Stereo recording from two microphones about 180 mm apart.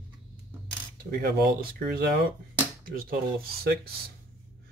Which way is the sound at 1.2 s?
55° right (ahead or behind).